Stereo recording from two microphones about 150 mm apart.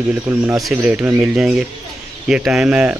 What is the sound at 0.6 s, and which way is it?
Speech, centre (ahead or behind).